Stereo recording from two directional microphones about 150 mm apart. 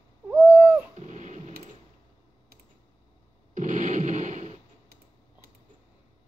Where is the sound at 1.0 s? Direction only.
55° right (ahead or behind).